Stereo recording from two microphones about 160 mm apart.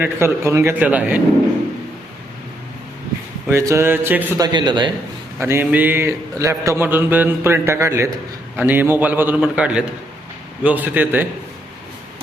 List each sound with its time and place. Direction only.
0.0 s speech: 15° right (ahead or behind)
3.5 s speech: 20° right (ahead or behind)
4.4 s speech: 25° right (ahead or behind)
5.4 s speech: 15° right (ahead or behind)